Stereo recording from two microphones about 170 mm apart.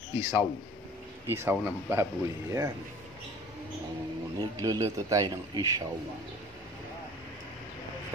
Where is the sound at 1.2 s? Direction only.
15° right (ahead or behind).